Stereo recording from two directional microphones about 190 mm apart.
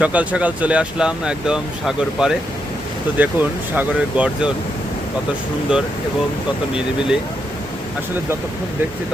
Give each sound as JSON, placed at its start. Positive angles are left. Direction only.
{"t": 0.0, "sound": "speech", "side_deg": -5}
{"t": 5.7, "sound": "speech", "side_deg": -5}